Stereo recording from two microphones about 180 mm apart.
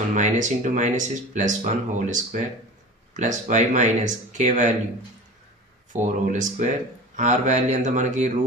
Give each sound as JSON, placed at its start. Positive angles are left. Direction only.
{"t": 0.1, "sound": "speech", "side_deg": -45}
{"t": 5.9, "sound": "speech", "side_deg": -45}